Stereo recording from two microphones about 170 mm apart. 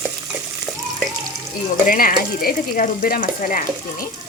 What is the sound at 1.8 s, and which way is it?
Speech, 50° left (ahead or behind).